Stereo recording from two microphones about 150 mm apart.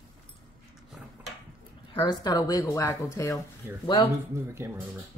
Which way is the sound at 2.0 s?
30° left (ahead or behind).